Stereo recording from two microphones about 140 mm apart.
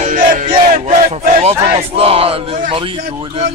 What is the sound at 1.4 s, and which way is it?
Speech, 45° right (ahead or behind).